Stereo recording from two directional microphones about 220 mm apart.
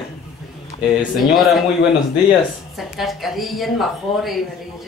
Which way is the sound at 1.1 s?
Centre (ahead or behind).